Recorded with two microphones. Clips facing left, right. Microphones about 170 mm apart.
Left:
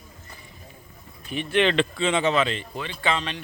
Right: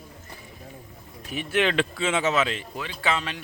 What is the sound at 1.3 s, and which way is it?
Speech, 5° right (ahead or behind).